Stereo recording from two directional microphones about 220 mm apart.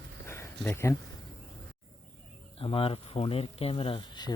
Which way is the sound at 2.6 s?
25° left (ahead or behind).